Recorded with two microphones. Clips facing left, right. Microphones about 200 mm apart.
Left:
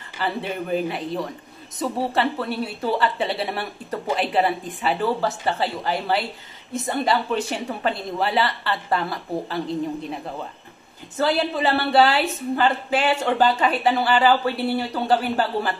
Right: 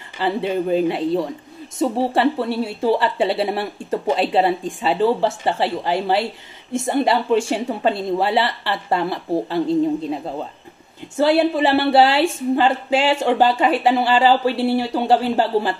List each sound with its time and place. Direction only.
0.2 s speech: 25° right (ahead or behind)